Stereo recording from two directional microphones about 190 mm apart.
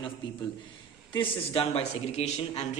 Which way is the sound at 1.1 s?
25° left (ahead or behind).